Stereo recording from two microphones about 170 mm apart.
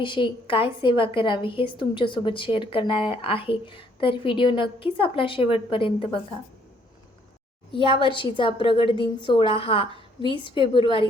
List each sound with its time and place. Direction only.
0.0 s a woman's voice: 30° left (ahead or behind)
7.7 s a woman's voice: 30° left (ahead or behind)